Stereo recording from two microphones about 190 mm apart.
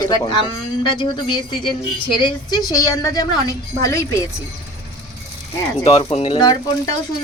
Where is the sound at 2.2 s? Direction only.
20° left (ahead or behind).